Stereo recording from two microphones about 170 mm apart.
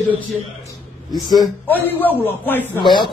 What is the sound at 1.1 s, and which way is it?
Speech, 25° left (ahead or behind).